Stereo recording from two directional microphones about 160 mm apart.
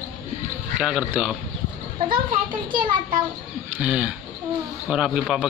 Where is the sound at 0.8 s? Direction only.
5° right (ahead or behind).